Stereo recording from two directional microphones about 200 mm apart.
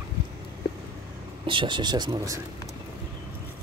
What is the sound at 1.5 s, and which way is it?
Speech, 25° right (ahead or behind).